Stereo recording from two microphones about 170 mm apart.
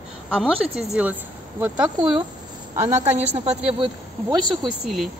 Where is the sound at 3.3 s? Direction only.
35° right (ahead or behind).